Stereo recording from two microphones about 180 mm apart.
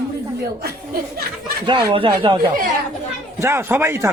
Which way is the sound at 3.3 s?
15° right (ahead or behind).